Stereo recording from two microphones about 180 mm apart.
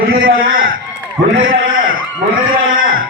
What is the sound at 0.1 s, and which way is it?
Speech, 55° right (ahead or behind).